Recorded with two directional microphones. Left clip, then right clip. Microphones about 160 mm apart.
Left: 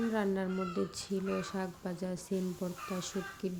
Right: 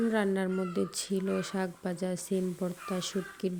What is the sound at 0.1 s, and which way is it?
Speech, 25° right (ahead or behind).